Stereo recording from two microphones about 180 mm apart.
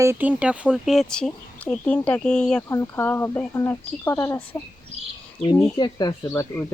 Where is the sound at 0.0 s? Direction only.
10° right (ahead or behind); by 4.4 s 15° left (ahead or behind).